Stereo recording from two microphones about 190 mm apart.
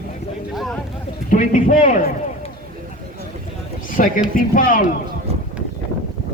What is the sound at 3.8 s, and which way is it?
Speech, 45° left (ahead or behind).